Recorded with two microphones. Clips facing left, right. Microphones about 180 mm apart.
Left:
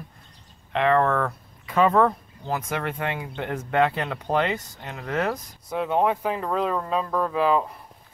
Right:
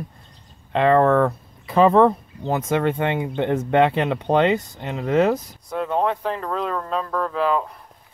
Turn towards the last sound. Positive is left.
turn(degrees=5)  # may be behind; listen again after turning